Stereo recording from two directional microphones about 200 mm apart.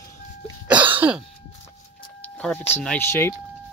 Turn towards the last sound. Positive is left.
turn(degrees=15)  # may be behind; listen again after turning